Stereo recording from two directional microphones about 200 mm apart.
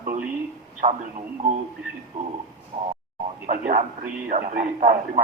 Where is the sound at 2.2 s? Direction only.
40° right (ahead or behind).